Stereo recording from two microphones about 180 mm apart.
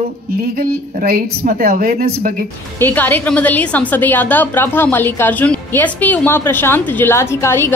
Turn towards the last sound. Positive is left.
turn(degrees=15)  # may be behind; listen again after turning